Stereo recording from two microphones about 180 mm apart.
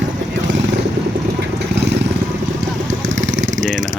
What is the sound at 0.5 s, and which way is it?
Vehicle, 90° right.